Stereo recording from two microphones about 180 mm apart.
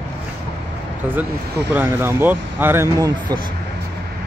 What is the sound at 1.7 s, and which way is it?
A man's voice, 10° right (ahead or behind).